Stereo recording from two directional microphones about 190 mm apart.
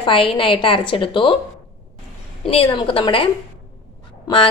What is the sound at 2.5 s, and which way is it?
Speech, 30° left (ahead or behind).